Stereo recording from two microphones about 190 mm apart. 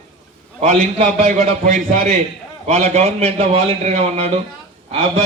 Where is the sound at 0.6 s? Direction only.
35° right (ahead or behind).